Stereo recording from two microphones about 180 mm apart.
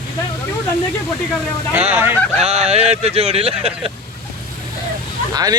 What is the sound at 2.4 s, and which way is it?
Speech, 35° right (ahead or behind).